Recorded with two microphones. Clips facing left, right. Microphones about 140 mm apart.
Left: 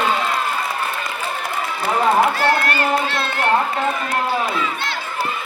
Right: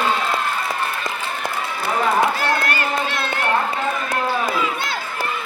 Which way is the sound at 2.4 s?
15° right (ahead or behind).